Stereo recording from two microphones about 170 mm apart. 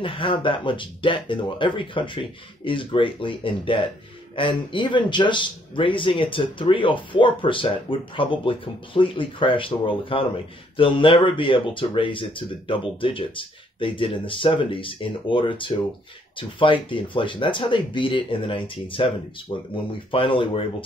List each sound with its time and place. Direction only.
0.0 s speech: 30° left (ahead or behind)